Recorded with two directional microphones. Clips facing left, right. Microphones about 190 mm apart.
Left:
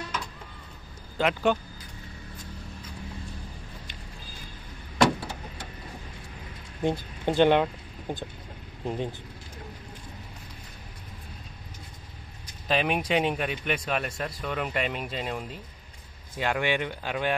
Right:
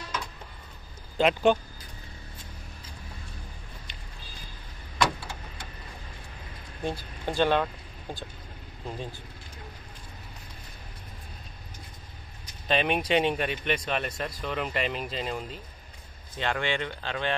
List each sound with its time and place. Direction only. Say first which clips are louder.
1.1 s speech: right 3 dB; 20° right (ahead or behind)
6.8 s speech: left 5 dB; 20° left (ahead or behind)
12.6 s speech: even; 5° left (ahead or behind)
16.3 s speech: left 2 dB; 15° left (ahead or behind)